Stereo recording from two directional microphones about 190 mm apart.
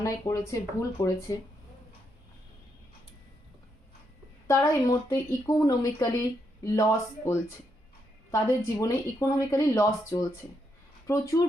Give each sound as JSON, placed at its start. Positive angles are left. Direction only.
{"t": 0.0, "sound": "speech", "side_deg": 15}
{"t": 4.4, "sound": "a woman's voice", "side_deg": 15}